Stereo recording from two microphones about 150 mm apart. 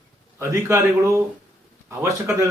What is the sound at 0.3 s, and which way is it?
Speech, 20° right (ahead or behind).